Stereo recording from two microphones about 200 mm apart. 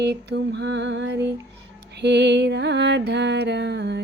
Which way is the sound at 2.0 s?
60° right (ahead or behind).